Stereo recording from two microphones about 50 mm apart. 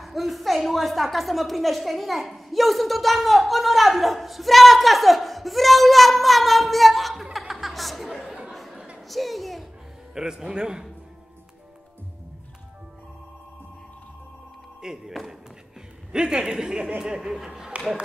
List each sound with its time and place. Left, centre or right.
0.0 s a woman's voice: centre
7.3 s chuckle: centre
8.5 s a sound: centre
9.1 s a woman's voice: centre
10.1 s speech: centre
14.8 s speech: centre